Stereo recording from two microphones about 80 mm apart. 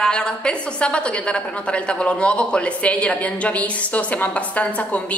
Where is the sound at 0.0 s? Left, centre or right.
Centre.